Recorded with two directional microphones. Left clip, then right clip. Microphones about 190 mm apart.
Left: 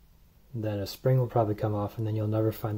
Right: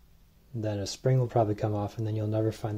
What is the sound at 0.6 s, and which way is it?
Speech, 5° right (ahead or behind).